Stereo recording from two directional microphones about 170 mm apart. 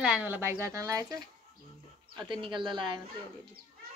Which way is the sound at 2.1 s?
30° right (ahead or behind).